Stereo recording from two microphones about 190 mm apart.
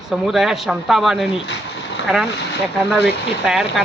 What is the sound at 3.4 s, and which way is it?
Speech, centre (ahead or behind).